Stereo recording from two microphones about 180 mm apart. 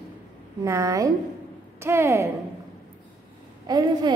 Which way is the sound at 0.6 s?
20° right (ahead or behind).